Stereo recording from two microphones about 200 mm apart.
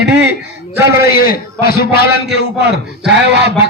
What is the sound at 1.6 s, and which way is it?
Speech, 50° left (ahead or behind).